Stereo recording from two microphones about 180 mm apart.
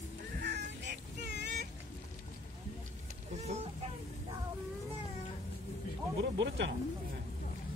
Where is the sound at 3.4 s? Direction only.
40° right (ahead or behind).